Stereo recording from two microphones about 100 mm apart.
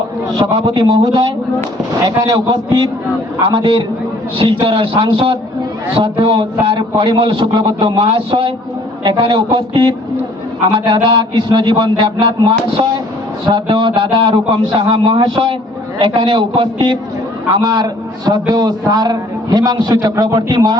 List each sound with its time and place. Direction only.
0.3 s a man's voice: 55° right (ahead or behind)
4.4 s a man's voice: 55° right (ahead or behind)
14.8 s a man's voice: 45° right (ahead or behind)